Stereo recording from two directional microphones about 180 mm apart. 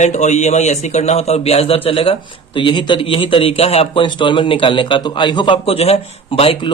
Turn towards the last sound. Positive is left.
turn(degrees=30)  # may be behind; listen again after turning